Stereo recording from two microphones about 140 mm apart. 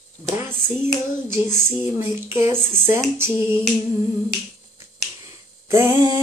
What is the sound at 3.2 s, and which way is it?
Female singing, 15° right (ahead or behind).